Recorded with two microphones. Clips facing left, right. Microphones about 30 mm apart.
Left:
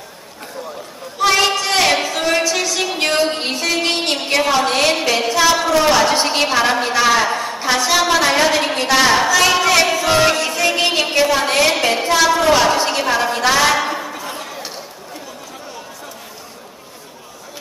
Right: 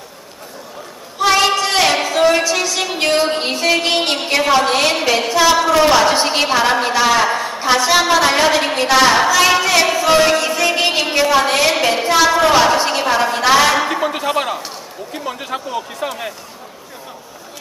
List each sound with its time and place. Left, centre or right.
1.2 s a woman's voice: centre
14.0 s speech: right